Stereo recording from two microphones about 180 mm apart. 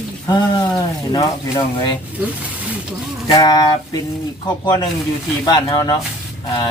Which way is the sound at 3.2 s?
20° left (ahead or behind).